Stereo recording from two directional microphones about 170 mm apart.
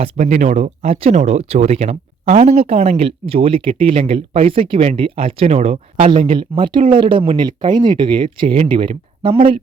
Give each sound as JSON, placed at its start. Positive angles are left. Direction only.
{"t": 0.2, "sound": "speech", "side_deg": -45}